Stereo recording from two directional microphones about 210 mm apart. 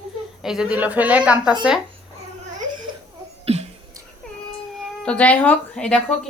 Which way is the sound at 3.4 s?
30° right (ahead or behind).